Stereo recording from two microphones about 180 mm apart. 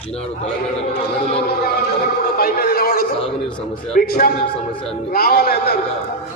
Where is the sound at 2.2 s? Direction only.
55° left (ahead or behind).